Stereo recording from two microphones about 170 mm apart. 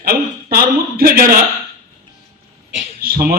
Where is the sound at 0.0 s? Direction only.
60° right (ahead or behind).